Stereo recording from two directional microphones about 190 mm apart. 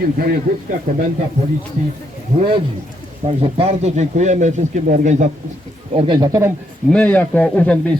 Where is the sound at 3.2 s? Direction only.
30° right (ahead or behind).